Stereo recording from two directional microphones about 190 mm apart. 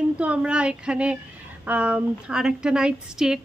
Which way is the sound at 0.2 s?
5° right (ahead or behind).